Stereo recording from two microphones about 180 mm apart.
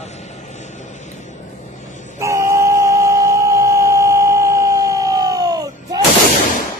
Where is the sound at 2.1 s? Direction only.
15° right (ahead or behind).